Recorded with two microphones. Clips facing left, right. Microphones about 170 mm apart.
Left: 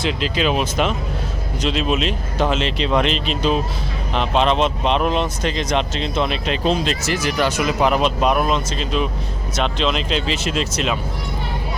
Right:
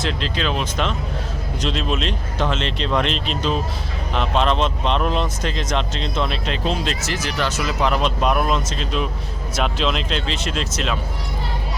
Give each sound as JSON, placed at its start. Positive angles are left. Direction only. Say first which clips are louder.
{"t": 0.0, "sound": "speech", "louder": "left 4 dB", "side_deg": 10}